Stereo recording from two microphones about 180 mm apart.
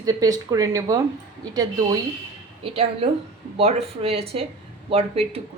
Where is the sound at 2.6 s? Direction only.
35° right (ahead or behind).